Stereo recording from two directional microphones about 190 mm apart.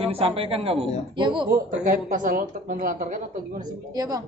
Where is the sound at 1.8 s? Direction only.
45° right (ahead or behind).